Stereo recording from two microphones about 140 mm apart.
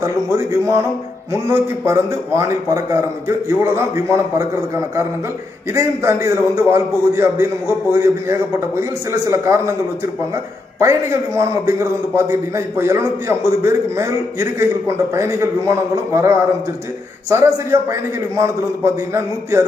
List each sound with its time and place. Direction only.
0.0 s a man's voice: 20° right (ahead or behind)
10.8 s a man's voice: 20° right (ahead or behind)